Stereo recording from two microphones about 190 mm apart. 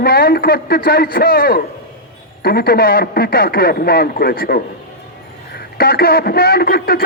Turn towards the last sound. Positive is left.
turn(degrees=50)  # may be behind; listen again after turning